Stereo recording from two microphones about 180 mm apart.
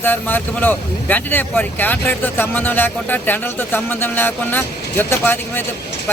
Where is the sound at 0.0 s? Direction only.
10° left (ahead or behind).